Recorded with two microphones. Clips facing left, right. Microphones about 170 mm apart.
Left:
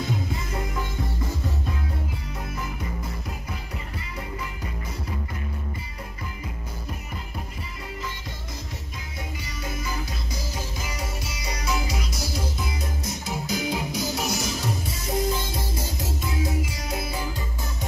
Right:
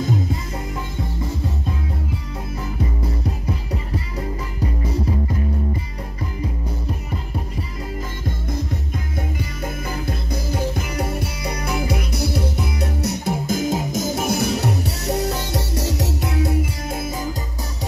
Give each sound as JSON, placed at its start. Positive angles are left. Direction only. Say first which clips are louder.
{"t": 9.8, "sound": "music", "louder": "right 6 dB", "side_deg": -55}